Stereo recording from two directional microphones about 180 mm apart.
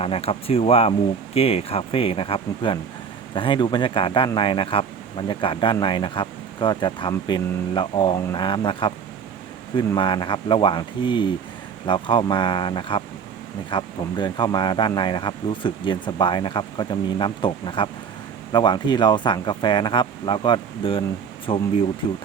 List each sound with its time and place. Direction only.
0.0 s speech: 30° left (ahead or behind)